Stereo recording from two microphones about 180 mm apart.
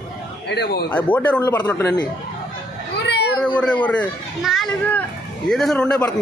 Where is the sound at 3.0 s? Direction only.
65° left (ahead or behind).